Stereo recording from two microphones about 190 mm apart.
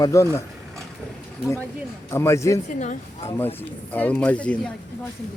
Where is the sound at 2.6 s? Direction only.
40° left (ahead or behind).